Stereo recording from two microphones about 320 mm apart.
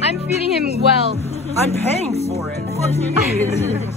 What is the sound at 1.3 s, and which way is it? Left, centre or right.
Vehicle, centre.